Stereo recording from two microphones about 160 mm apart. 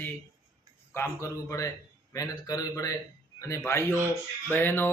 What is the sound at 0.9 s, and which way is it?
Mantra, 20° left (ahead or behind).